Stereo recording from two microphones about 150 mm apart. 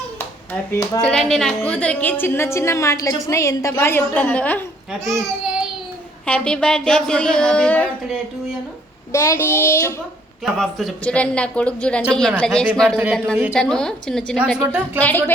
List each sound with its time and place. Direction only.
0.7 s speech: 20° left (ahead or behind)
1.0 s a woman's voice: 5° left (ahead or behind)
6.2 s a woman's voice: 5° left (ahead or behind)
9.1 s a woman's voice: 20° left (ahead or behind)
10.4 s a woman's voice: centre (ahead or behind)